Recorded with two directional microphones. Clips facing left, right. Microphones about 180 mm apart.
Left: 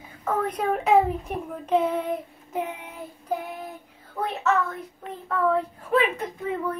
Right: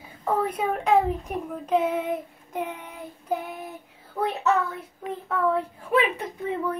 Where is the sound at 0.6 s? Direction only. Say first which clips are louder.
Left 3 dB; centre (ahead or behind).